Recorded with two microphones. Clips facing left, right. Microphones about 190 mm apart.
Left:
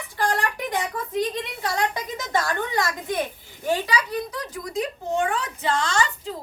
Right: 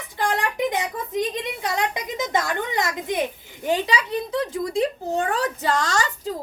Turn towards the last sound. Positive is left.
turn(degrees=-40)  # may be behind; listen again after turning